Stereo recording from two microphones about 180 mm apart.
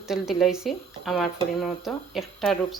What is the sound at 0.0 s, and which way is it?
Speech, centre (ahead or behind).